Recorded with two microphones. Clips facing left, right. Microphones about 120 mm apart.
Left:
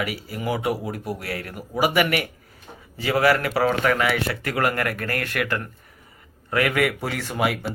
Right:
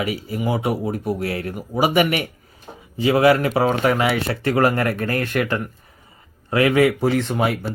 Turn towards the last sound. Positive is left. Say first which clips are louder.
# right 7 dB
turn(degrees=-25)  # may be behind; listen again after turning